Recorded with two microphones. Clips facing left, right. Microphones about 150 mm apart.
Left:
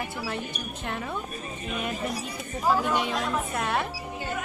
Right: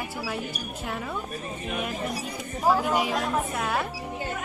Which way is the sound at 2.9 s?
5° right (ahead or behind).